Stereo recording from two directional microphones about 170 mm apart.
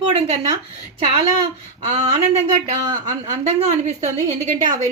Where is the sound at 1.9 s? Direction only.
40° right (ahead or behind).